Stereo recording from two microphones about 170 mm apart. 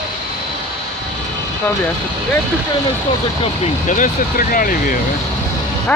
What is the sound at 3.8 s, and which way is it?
Speech, 50° left (ahead or behind).